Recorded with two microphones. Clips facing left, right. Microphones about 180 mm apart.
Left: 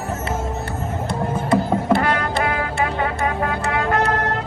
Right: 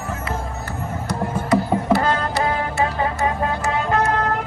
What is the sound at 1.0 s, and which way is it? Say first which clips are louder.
Music: left 1 dB; 55° left (ahead or behind).